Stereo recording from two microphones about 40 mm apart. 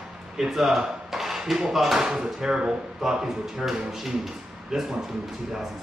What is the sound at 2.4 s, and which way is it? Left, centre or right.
Speech, right.